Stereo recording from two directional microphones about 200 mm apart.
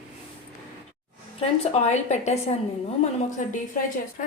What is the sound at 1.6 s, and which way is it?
Speech, 35° left (ahead or behind).